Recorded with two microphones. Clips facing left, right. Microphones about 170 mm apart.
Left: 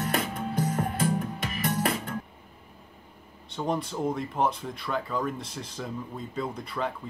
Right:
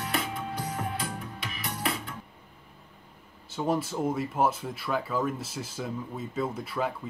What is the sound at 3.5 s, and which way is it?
Speech, 5° right (ahead or behind).